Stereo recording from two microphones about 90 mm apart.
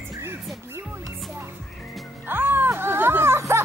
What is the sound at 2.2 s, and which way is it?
Music, 25° right (ahead or behind).